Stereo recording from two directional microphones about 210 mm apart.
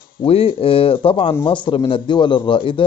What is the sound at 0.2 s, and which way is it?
A man's voice, 25° left (ahead or behind).